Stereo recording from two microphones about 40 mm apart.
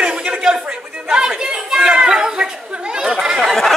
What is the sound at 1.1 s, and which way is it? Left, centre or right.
Chatter, centre.